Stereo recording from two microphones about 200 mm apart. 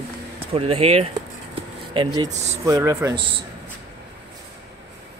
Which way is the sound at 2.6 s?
15° right (ahead or behind).